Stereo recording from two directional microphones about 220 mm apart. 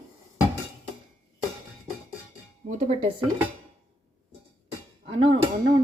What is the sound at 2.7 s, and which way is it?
Speech, 30° right (ahead or behind).